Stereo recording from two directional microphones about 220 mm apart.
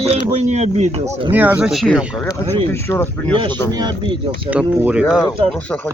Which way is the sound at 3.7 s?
20° right (ahead or behind).